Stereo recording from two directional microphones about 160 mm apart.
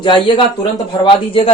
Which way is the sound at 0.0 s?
30° left (ahead or behind).